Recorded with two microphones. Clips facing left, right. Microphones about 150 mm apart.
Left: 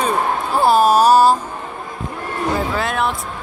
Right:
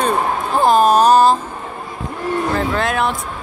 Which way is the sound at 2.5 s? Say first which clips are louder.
Right 2 dB; 5° left (ahead or behind).